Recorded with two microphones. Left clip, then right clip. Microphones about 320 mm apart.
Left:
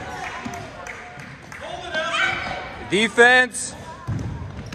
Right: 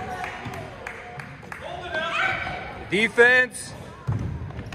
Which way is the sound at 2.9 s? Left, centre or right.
Centre.